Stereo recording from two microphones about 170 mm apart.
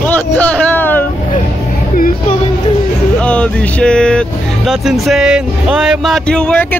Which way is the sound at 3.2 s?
5° left (ahead or behind).